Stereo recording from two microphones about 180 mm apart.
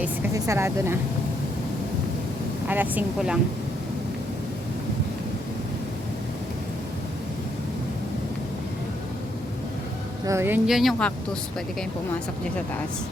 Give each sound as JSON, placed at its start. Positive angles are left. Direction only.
{"t": 0.3, "sound": "speech", "side_deg": -15}
{"t": 2.6, "sound": "speech", "side_deg": -10}
{"t": 10.2, "sound": "speech", "side_deg": -15}